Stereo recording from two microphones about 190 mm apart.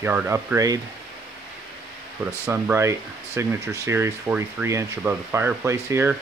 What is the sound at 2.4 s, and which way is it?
Speech, 10° right (ahead or behind).